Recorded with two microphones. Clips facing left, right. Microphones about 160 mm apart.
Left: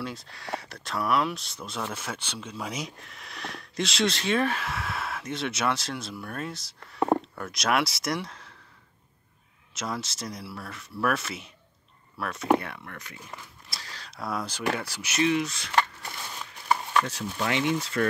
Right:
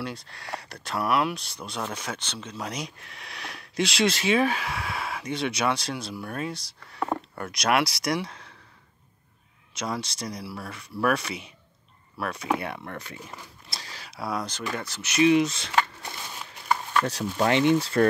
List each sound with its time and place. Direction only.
0.0 s speech: centre (ahead or behind)
7.0 s a sound: 30° left (ahead or behind)
7.5 s speech: centre (ahead or behind)
9.8 s speech: 5° left (ahead or behind)
12.7 s speech: 30° right (ahead or behind)
13.7 s a sound: 20° right (ahead or behind)
14.1 s speech: centre (ahead or behind)
15.2 s speech: 20° right (ahead or behind)
17.0 s speech: 35° right (ahead or behind)